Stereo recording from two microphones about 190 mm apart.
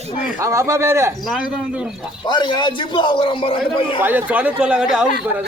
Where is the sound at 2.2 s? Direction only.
25° left (ahead or behind).